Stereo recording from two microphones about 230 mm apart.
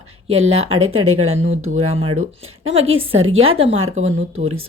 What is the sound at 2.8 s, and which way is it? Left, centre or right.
Speech, right.